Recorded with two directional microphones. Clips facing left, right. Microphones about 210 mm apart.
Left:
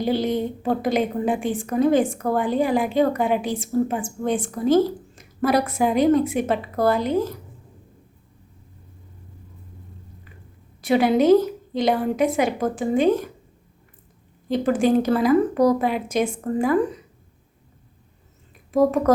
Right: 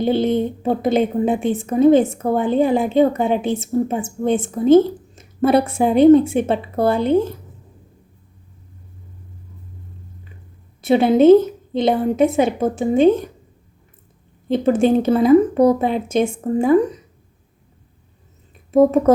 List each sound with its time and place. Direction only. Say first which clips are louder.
0.0 s a woman's voice: right 5 dB; 25° right (ahead or behind)
10.8 s a woman's voice: right 4 dB; 25° right (ahead or behind)
14.4 s a woman's voice: right 4 dB; 25° right (ahead or behind)
18.7 s a woman's voice: right 5 dB; 25° right (ahead or behind)